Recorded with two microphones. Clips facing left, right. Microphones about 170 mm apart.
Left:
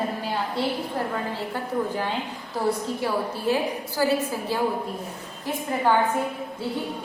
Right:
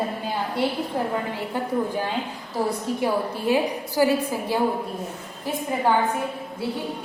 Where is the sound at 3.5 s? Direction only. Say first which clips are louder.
Right 3 dB; 15° right (ahead or behind).